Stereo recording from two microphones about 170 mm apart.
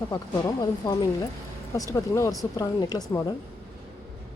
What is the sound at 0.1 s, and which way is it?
Speech, 25° left (ahead or behind).